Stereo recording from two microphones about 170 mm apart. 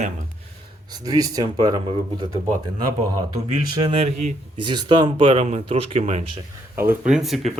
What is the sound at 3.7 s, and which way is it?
Speech, 35° right (ahead or behind).